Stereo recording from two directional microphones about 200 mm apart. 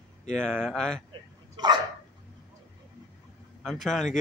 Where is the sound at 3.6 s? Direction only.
Centre (ahead or behind).